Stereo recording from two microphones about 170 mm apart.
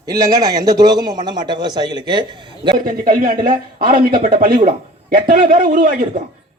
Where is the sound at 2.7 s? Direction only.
55° right (ahead or behind).